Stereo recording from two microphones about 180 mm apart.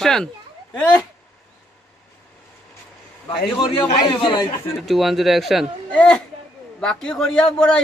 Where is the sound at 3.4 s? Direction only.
25° left (ahead or behind).